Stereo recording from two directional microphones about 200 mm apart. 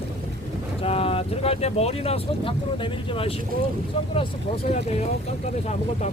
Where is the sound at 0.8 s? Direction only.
30° left (ahead or behind).